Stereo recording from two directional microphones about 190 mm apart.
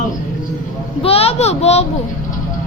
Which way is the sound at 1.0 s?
30° left (ahead or behind).